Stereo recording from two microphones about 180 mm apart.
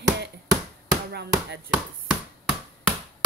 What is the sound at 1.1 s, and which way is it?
Chop, 65° right (ahead or behind).